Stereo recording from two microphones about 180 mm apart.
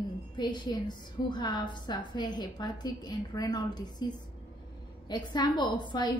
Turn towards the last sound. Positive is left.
turn(degrees=25)  # may be behind; listen again after turning